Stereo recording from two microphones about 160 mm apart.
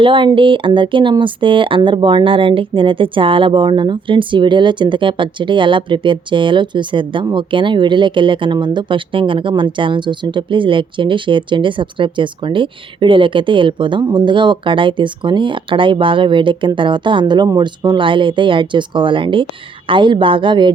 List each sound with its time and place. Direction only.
0.0 s speech: 30° right (ahead or behind)